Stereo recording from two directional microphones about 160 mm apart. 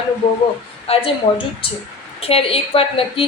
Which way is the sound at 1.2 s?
45° left (ahead or behind).